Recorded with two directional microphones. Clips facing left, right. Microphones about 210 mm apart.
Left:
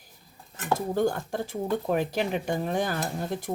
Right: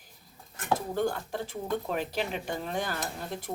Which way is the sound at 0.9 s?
45° left (ahead or behind).